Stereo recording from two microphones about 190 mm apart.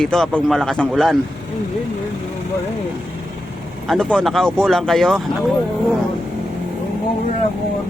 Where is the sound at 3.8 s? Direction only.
Centre (ahead or behind).